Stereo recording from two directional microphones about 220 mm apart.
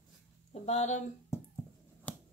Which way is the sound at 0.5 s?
30° left (ahead or behind).